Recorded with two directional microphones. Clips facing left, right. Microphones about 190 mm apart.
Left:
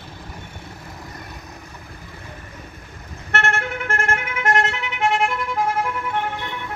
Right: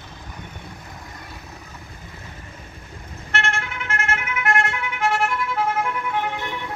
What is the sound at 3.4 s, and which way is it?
Vehicle, 45° left (ahead or behind).